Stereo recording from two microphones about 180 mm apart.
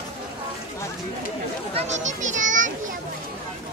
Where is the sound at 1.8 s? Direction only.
40° right (ahead or behind).